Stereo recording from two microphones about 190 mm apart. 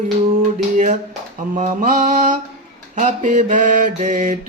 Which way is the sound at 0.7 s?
40° right (ahead or behind).